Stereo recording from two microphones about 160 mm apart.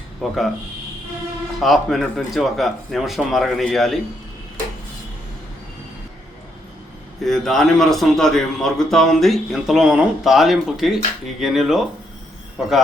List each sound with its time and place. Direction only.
0.2 s a man's voice: centre (ahead or behind)
1.5 s a man's voice: centre (ahead or behind)
7.3 s a man's voice: centre (ahead or behind)